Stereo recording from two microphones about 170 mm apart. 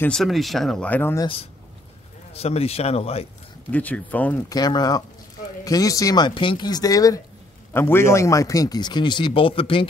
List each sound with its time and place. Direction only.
0.0 s speech: centre (ahead or behind)
1.2 s speech: 35° left (ahead or behind)
3.7 s speech: 10° left (ahead or behind)
4.5 s a man's voice: 25° left (ahead or behind)